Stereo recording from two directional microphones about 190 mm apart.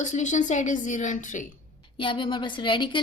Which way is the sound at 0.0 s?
40° left (ahead or behind).